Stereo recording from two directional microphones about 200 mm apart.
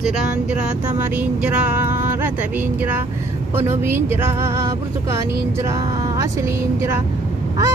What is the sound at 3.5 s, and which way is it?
Speech, 10° right (ahead or behind).